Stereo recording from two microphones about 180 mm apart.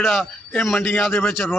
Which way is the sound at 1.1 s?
10° left (ahead or behind).